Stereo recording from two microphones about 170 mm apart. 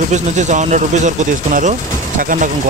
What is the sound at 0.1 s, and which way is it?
Speech, 45° right (ahead or behind).